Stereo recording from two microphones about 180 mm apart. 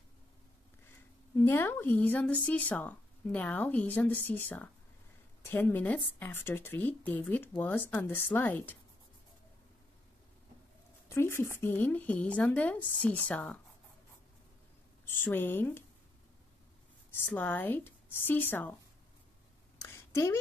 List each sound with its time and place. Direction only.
1.4 s speech: 10° left (ahead or behind)
11.1 s speech: 15° left (ahead or behind)
15.0 s speech: 10° left (ahead or behind)
17.1 s speech: 10° left (ahead or behind)
19.8 s a sound: 15° left (ahead or behind)